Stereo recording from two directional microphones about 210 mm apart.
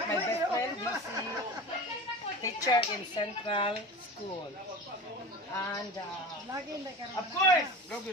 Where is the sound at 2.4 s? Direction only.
15° left (ahead or behind).